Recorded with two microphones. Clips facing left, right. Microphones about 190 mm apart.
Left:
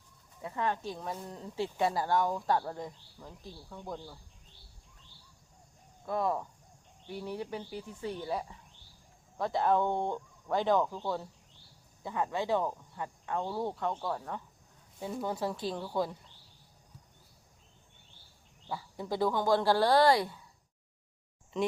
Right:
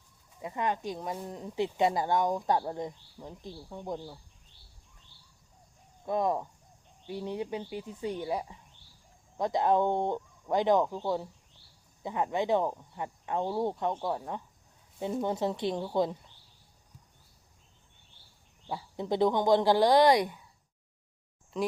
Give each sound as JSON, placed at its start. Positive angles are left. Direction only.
{"t": 0.4, "sound": "speech", "side_deg": -15}
{"t": 6.1, "sound": "speech", "side_deg": -20}
{"t": 18.7, "sound": "speech", "side_deg": -20}
{"t": 21.5, "sound": "speech", "side_deg": 0}